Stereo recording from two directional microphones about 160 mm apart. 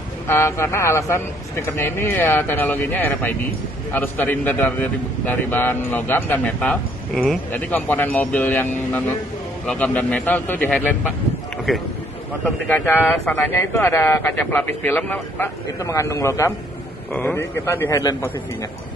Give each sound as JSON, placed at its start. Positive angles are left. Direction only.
{"t": 0.3, "sound": "a man's voice", "side_deg": 15}
{"t": 11.5, "sound": "a sound", "side_deg": 0}
{"t": 12.4, "sound": "a man's voice", "side_deg": 10}
{"t": 17.1, "sound": "speech", "side_deg": 5}
{"t": 17.4, "sound": "a man's voice", "side_deg": 15}